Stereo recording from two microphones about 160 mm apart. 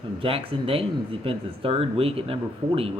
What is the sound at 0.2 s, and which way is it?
Speech, 35° right (ahead or behind).